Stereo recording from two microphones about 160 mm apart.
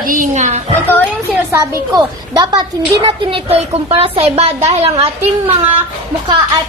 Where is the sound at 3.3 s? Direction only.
40° right (ahead or behind).